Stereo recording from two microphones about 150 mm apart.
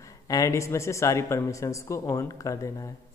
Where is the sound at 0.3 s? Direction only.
20° left (ahead or behind).